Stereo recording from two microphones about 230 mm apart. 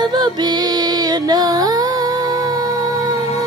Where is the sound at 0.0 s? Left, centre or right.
Centre.